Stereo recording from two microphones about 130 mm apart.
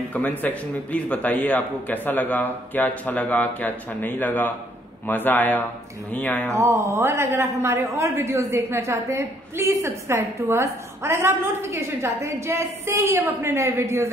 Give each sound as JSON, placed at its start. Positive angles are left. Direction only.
{"t": 0.1, "sound": "a man's voice", "side_deg": 10}
{"t": 6.5, "sound": "a man's voice", "side_deg": -20}